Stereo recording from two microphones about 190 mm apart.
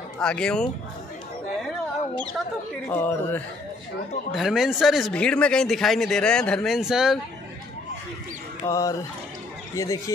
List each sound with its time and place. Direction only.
0.2 s speech: 5° left (ahead or behind)
2.9 s speech: 10° left (ahead or behind)
4.4 s speech: centre (ahead or behind)
8.6 s speech: 20° left (ahead or behind)